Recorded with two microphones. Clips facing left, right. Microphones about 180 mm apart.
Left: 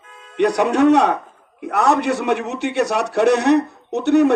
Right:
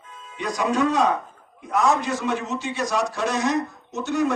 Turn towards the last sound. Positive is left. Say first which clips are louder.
# left 9 dB
turn(degrees=65)  # may be behind; listen again after turning